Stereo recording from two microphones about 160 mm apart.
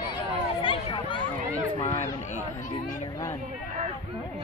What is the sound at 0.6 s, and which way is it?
Speech, 30° left (ahead or behind).